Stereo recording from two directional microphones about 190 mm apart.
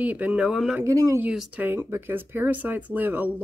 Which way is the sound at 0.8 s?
15° right (ahead or behind).